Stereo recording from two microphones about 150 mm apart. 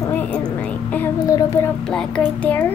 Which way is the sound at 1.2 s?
20° left (ahead or behind).